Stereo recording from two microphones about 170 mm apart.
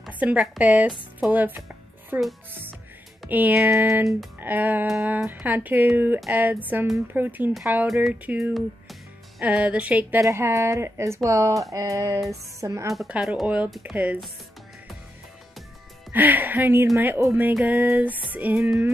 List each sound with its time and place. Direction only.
0.0 s speech: 5° right (ahead or behind)
3.3 s speech: 10° right (ahead or behind)
12.9 s speech: 5° right (ahead or behind)
16.1 s speech: 10° right (ahead or behind)